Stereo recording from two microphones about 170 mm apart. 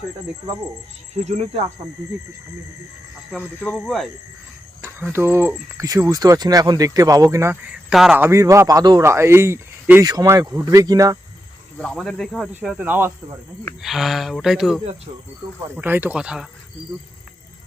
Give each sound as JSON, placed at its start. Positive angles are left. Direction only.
{"t": 1.1, "sound": "speech", "side_deg": -40}
{"t": 3.3, "sound": "speech", "side_deg": 5}
{"t": 5.1, "sound": "speech", "side_deg": -15}
{"t": 11.8, "sound": "speech", "side_deg": 5}
{"t": 13.8, "sound": "speech", "side_deg": 0}